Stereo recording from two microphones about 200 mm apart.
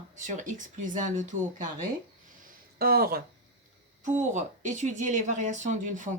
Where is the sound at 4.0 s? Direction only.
35° right (ahead or behind).